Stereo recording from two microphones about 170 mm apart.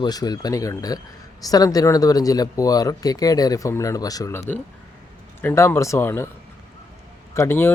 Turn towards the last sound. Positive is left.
turn(degrees=15)  # may be behind; listen again after turning